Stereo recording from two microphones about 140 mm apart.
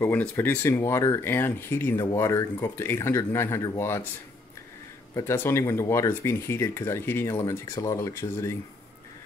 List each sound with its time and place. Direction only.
0.0 s speech: 10° left (ahead or behind)
5.1 s speech: 15° left (ahead or behind)